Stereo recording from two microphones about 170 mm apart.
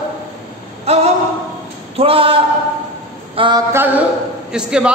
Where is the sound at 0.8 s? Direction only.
40° right (ahead or behind).